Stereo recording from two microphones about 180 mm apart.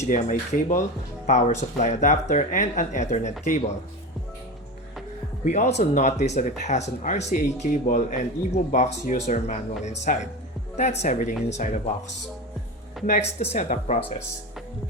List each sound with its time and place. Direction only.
0.0 s speech: 45° left (ahead or behind)
5.5 s speech: 40° left (ahead or behind)
13.4 s speech: 40° left (ahead or behind)